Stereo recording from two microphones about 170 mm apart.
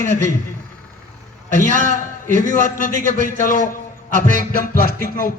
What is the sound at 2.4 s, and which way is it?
A man's voice, 50° left (ahead or behind).